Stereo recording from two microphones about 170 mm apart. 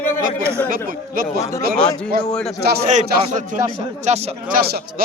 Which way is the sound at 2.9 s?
45° right (ahead or behind).